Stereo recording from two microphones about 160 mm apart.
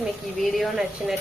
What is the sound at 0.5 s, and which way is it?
Speech, centre (ahead or behind).